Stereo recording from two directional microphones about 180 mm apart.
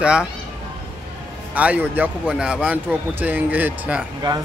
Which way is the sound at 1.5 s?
10° right (ahead or behind).